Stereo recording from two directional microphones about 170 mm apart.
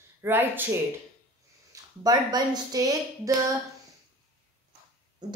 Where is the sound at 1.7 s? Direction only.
25° right (ahead or behind).